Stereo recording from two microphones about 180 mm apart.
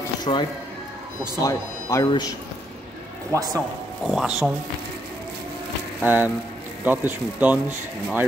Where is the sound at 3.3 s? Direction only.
20° right (ahead or behind).